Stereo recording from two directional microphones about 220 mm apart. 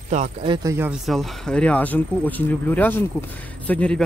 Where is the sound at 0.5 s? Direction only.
15° right (ahead or behind).